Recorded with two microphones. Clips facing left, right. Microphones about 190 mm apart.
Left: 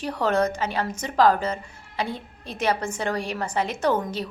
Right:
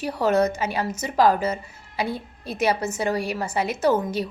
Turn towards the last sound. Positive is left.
turn(degrees=-10)  # may be behind; listen again after turning